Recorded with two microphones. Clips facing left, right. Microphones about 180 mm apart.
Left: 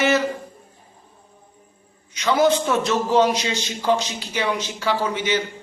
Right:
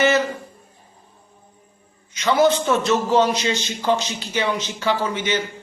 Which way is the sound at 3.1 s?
10° left (ahead or behind).